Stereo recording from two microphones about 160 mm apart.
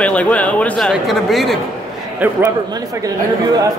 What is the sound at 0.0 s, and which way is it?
A man's voice, 10° left (ahead or behind).